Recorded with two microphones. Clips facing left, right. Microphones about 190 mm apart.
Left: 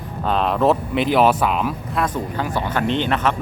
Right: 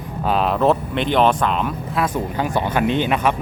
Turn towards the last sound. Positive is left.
turn(degrees=-10)  # may be behind; listen again after turning